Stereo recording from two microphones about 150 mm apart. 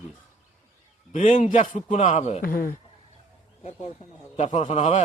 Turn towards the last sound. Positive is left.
turn(degrees=50)  # may be behind; listen again after turning